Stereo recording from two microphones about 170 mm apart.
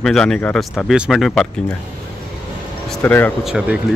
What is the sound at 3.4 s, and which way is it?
Speech, 5° right (ahead or behind).